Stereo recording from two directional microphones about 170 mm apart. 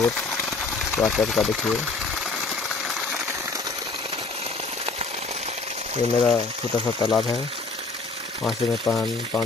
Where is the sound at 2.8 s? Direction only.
Centre (ahead or behind).